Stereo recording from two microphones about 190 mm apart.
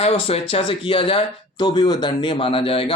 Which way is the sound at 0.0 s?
30° left (ahead or behind).